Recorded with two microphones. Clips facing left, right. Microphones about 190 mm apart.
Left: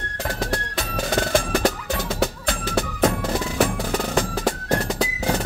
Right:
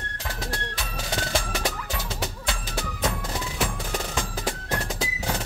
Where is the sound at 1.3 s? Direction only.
50° left (ahead or behind).